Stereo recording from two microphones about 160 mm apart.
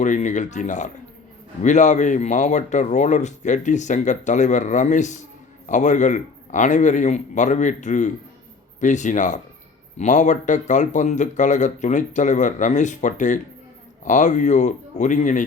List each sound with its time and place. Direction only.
0.0 s speech: 50° left (ahead or behind)